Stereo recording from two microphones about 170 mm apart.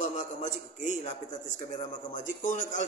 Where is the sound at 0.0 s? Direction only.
45° left (ahead or behind).